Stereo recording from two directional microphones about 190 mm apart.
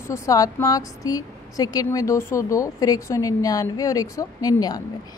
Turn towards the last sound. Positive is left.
turn(degrees=20)  # may be behind; listen again after turning